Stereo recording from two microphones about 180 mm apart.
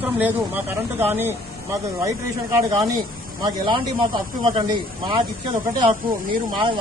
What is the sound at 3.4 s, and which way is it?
Speech, 25° right (ahead or behind).